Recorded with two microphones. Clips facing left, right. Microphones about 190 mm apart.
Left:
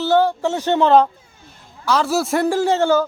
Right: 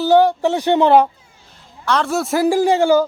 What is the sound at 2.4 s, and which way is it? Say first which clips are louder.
Speech: right 6 dB; 10° right (ahead or behind).